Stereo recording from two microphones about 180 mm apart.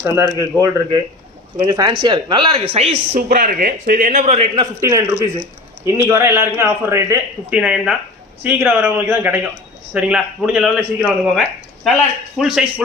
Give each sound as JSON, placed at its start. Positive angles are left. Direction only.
{"t": 0.0, "sound": "speech", "side_deg": -15}
{"t": 4.7, "sound": "a man's voice", "side_deg": -15}